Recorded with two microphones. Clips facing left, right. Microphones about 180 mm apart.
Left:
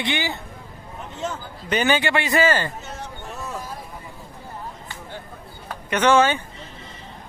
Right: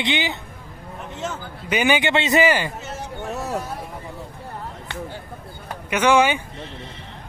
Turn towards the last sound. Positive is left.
turn(degrees=-15)  # may be behind; listen again after turning